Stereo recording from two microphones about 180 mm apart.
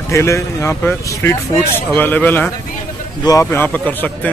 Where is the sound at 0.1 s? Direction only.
15° left (ahead or behind).